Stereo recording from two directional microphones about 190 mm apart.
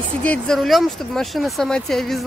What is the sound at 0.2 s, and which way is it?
Speech, 5° left (ahead or behind).